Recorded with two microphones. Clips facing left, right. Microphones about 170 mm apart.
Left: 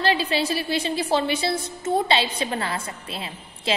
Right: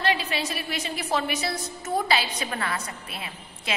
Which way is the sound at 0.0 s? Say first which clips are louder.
Left 4 dB; 30° left (ahead or behind).